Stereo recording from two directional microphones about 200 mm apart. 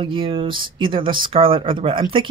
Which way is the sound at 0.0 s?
25° right (ahead or behind).